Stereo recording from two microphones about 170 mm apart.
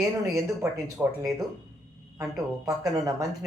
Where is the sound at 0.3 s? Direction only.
15° right (ahead or behind).